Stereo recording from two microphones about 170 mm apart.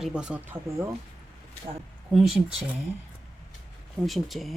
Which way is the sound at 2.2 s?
5° right (ahead or behind).